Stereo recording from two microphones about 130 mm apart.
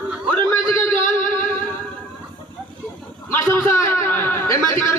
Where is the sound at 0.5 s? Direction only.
15° left (ahead or behind).